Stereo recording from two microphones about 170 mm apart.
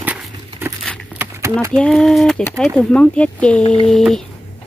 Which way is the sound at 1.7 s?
5° left (ahead or behind).